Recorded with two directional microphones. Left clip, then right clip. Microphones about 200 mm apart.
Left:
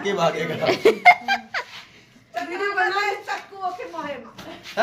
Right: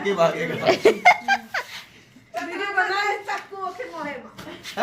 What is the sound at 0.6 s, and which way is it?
Laughter, centre (ahead or behind).